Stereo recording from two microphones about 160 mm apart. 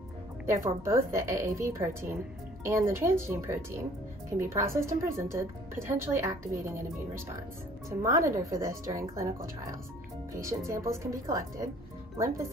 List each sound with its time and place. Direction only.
0.5 s a woman's voice: 15° right (ahead or behind)
8.0 s a woman's voice: 20° right (ahead or behind)